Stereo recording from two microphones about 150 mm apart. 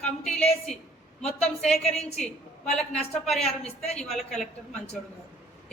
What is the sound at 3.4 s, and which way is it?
Speech, 45° left (ahead or behind).